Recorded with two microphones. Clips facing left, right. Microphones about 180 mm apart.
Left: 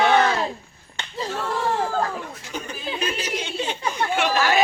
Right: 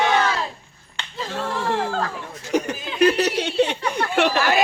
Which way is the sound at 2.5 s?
80° right.